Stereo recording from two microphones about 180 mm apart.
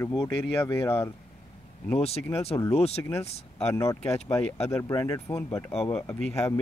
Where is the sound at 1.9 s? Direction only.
35° left (ahead or behind).